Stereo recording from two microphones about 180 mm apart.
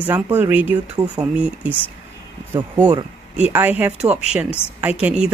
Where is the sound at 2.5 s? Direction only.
20° right (ahead or behind).